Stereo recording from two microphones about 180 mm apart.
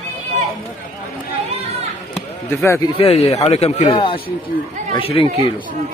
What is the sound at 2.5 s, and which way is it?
Speech, 15° left (ahead or behind).